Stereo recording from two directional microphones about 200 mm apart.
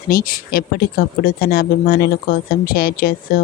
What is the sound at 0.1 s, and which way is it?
Speech, 45° left (ahead or behind).